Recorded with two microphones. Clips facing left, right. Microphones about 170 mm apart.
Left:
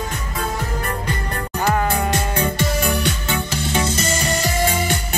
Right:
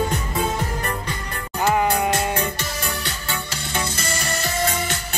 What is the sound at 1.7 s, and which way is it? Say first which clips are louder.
Sheep: right 1 dB; 10° right (ahead or behind).